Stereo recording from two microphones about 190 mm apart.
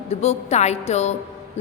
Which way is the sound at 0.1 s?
35° left (ahead or behind).